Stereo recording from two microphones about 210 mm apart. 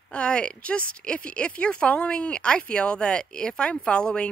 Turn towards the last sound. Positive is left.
turn(degrees=5)  # may be behind; listen again after turning